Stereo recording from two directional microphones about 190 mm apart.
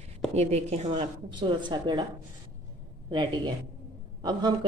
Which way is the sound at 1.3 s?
25° right (ahead or behind).